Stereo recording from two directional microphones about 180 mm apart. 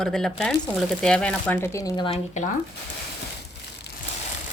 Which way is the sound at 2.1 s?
40° left (ahead or behind).